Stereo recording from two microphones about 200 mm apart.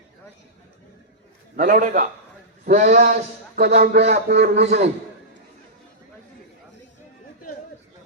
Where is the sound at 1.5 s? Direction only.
40° right (ahead or behind).